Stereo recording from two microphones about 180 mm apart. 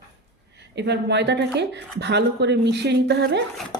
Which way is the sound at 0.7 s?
70° right (ahead or behind).